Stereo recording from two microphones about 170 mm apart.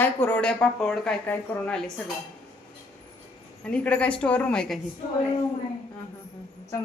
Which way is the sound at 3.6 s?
5° left (ahead or behind).